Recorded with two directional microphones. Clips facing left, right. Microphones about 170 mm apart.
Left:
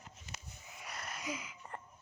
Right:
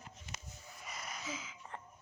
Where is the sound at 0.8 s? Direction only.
Centre (ahead or behind).